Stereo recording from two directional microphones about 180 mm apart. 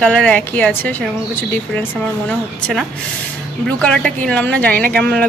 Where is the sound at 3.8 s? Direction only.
5° left (ahead or behind).